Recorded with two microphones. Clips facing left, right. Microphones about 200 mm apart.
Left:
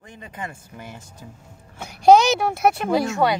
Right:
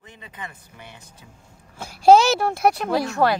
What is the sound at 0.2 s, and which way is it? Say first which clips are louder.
Speech: left 5 dB; 45° left (ahead or behind).